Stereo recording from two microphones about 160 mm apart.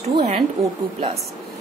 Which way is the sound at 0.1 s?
40° right (ahead or behind).